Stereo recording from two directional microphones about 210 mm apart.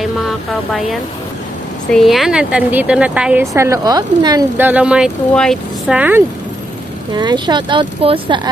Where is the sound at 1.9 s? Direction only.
Centre (ahead or behind).